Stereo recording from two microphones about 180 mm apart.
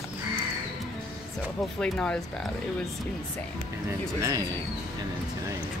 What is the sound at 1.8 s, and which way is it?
Speech, 5° left (ahead or behind).